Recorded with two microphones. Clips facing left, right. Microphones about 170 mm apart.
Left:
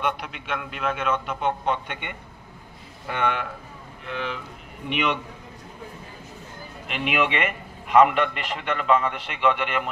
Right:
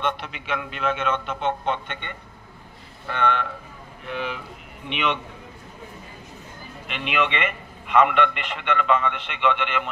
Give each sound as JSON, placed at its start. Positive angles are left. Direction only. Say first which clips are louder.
{"t": 0.0, "sound": "a man's voice", "louder": "even", "side_deg": 0}
{"t": 4.1, "sound": "speech", "louder": "right 1 dB", "side_deg": -15}
{"t": 4.8, "sound": "a man's voice", "louder": "left 1 dB", "side_deg": 5}
{"t": 7.2, "sound": "a man's voice", "louder": "left 1 dB", "side_deg": 45}
{"t": 9.4, "sound": "a man's voice", "louder": "left 1 dB", "side_deg": 5}